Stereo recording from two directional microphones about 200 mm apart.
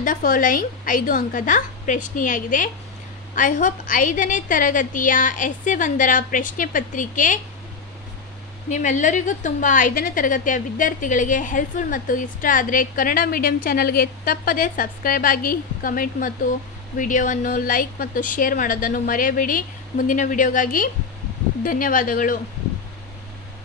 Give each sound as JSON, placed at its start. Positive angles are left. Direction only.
{"t": 0.0, "sound": "a woman's voice", "side_deg": 40}
{"t": 8.6, "sound": "a woman's voice", "side_deg": 35}